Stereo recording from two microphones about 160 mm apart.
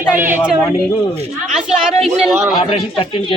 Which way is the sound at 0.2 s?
15° right (ahead or behind).